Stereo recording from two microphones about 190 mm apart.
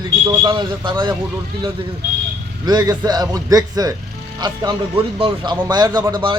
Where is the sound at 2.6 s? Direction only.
20° right (ahead or behind).